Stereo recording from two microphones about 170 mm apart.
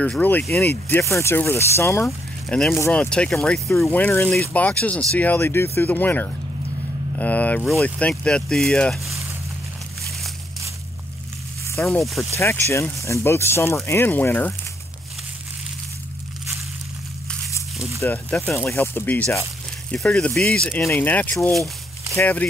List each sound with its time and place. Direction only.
0.0 s speech: 10° left (ahead or behind)
2.0 s speech: centre (ahead or behind)
11.8 s speech: centre (ahead or behind)
12.4 s speech: 15° left (ahead or behind)
18.0 s speech: 10° left (ahead or behind)